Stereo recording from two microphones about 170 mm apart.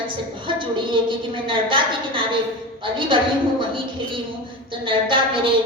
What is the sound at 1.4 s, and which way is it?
Speech, 30° right (ahead or behind).